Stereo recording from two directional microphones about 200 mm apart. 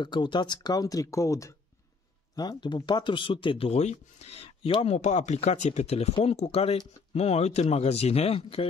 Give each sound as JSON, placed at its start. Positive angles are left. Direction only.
{"t": 0.0, "sound": "speech", "side_deg": 20}